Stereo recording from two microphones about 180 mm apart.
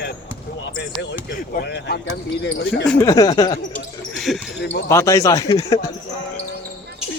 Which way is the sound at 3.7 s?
Centre (ahead or behind).